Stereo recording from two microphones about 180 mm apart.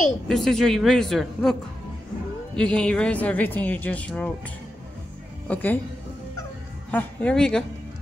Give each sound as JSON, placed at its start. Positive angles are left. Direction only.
{"t": 0.3, "sound": "a man's voice", "side_deg": 0}
{"t": 5.5, "sound": "speech", "side_deg": 10}
{"t": 6.9, "sound": "speech", "side_deg": 10}